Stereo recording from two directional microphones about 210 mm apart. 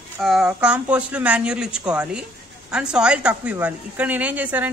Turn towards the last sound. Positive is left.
turn(degrees=-10)  # may be behind; listen again after turning